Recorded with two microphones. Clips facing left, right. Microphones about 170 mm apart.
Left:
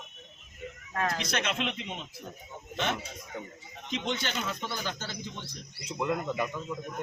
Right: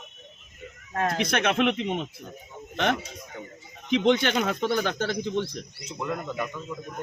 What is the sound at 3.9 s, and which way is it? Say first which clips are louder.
Speech: right 11 dB; 60° right (ahead or behind).